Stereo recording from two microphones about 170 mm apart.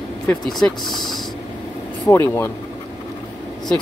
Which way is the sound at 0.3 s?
Centre (ahead or behind).